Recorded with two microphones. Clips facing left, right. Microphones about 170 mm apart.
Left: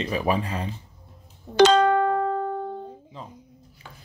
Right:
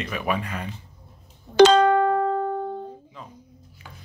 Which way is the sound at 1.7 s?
90° right.